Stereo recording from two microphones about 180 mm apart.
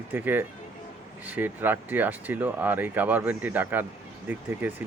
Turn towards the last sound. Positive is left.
turn(degrees=-10)  # may be behind; listen again after turning